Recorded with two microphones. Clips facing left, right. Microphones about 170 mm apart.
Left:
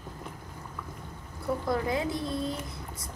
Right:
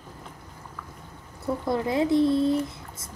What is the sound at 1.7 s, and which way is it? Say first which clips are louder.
Speech: right 7 dB; 25° right (ahead or behind).